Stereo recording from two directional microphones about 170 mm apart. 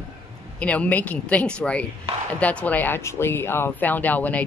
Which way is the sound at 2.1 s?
35° right (ahead or behind).